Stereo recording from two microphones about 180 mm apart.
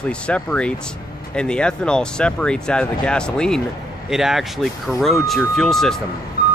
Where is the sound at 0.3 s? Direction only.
5° left (ahead or behind).